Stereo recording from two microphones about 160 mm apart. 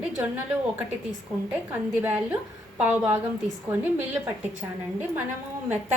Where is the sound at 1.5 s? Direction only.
10° right (ahead or behind).